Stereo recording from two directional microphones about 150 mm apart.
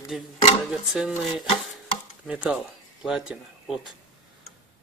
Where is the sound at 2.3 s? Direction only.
5° right (ahead or behind).